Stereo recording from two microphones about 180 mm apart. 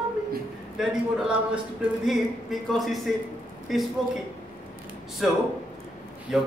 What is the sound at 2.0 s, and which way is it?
A man's voice, centre (ahead or behind).